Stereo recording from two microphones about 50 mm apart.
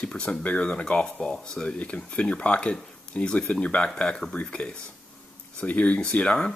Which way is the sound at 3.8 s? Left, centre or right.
Centre.